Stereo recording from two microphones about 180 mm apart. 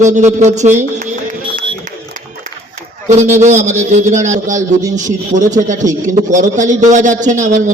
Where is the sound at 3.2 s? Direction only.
40° right (ahead or behind).